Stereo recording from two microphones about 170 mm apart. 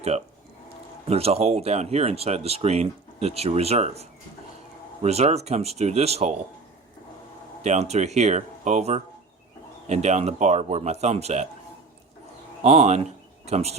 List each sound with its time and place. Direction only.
1.0 s speech: 35° right (ahead or behind)
5.0 s speech: 40° right (ahead or behind)
7.6 s speech: 40° right (ahead or behind)
12.6 s speech: 40° right (ahead or behind)